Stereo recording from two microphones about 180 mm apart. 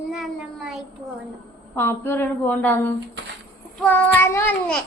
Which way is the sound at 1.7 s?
10° left (ahead or behind).